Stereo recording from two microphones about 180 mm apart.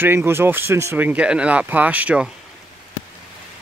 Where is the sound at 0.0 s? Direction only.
15° right (ahead or behind).